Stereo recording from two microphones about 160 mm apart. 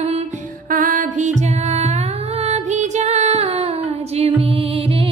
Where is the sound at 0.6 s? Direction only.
60° right (ahead or behind).